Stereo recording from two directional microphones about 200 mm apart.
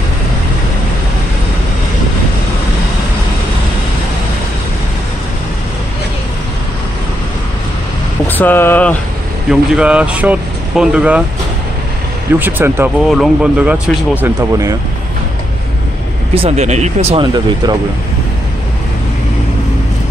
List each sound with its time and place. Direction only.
8.3 s speech: 10° left (ahead or behind)
9.5 s speech: 5° right (ahead or behind)
12.4 s speech: 10° right (ahead or behind)
14.2 s speech: 15° right (ahead or behind)
16.3 s speech: 30° right (ahead or behind)